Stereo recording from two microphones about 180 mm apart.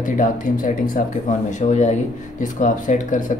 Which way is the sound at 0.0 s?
45° left (ahead or behind).